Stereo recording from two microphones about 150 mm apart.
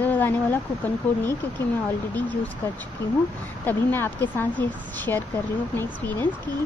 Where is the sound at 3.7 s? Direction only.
10° left (ahead or behind).